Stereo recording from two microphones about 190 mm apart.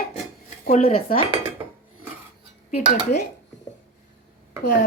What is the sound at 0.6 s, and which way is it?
Speech, 35° left (ahead or behind).